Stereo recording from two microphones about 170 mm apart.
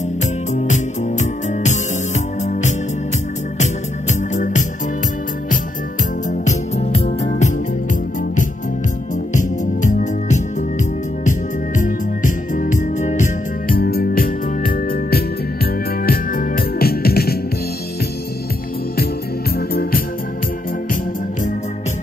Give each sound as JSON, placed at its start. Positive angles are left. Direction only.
{"t": 1.2, "sound": "music", "side_deg": 45}
{"t": 3.5, "sound": "organ", "side_deg": 45}
{"t": 6.4, "sound": "music", "side_deg": 40}
{"t": 9.3, "sound": "music", "side_deg": 50}
{"t": 13.7, "sound": "music", "side_deg": 65}
{"t": 19.7, "sound": "music", "side_deg": 60}